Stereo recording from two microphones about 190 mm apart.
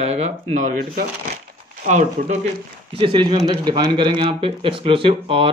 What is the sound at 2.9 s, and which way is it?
Speech, 30° right (ahead or behind).